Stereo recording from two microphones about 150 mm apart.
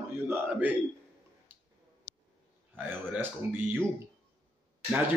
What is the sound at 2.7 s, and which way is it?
Speech, 15° right (ahead or behind).